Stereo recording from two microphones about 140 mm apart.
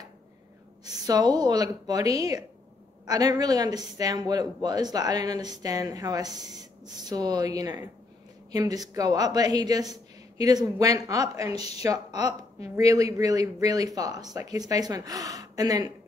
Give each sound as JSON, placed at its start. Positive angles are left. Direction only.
{"t": 0.8, "sound": "speech", "side_deg": -30}
{"t": 12.3, "sound": "a woman's voice", "side_deg": 45}
{"t": 12.7, "sound": "speech", "side_deg": -25}